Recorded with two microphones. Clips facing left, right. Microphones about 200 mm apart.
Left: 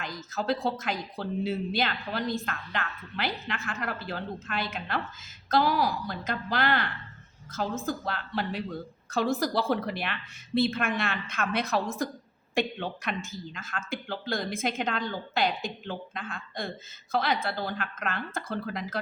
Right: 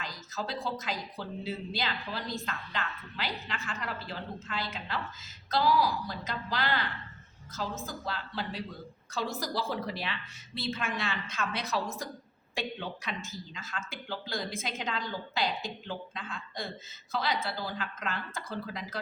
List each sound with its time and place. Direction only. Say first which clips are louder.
0.0 s a woman's voice: left 5 dB; 55° left (ahead or behind)